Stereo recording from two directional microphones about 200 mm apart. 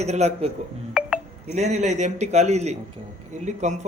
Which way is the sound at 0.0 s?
35° right (ahead or behind).